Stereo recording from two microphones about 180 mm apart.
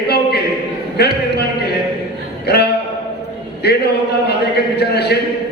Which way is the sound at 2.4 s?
65° left (ahead or behind).